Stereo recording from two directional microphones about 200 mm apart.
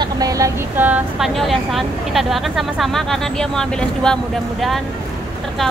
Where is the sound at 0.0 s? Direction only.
20° right (ahead or behind); by 4.8 s centre (ahead or behind).